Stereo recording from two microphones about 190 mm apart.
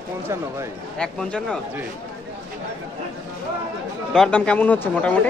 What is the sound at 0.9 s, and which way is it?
Speech, 5° left (ahead or behind).